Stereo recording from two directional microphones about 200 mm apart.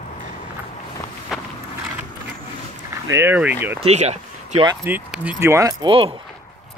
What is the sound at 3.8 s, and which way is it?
Speech, 35° right (ahead or behind).